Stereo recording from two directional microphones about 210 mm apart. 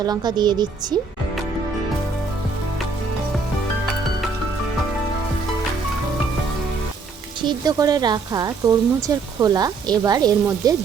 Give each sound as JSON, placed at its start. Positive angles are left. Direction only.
{"t": 0.0, "sound": "speech", "side_deg": -20}
{"t": 7.4, "sound": "speech", "side_deg": -20}